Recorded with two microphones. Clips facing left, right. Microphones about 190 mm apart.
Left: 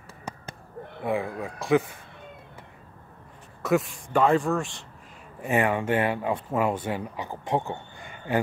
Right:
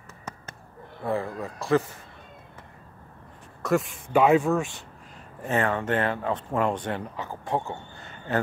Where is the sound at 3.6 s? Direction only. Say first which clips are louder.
Left 1 dB; centre (ahead or behind).